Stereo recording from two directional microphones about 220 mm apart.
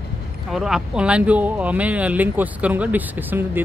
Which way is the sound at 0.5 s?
Centre (ahead or behind).